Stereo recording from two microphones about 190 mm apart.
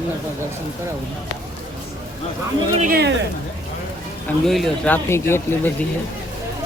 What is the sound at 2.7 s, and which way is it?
Speech, 45° right (ahead or behind).